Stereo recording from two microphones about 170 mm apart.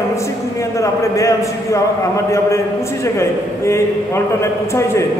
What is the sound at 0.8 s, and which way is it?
A man's voice, 20° left (ahead or behind).